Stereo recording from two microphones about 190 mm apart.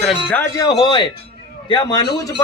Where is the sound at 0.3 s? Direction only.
20° left (ahead or behind).